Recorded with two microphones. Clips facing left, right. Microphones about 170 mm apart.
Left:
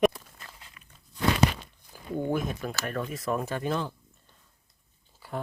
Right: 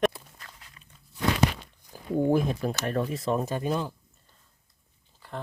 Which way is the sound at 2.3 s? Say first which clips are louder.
Right 5 dB; 30° right (ahead or behind).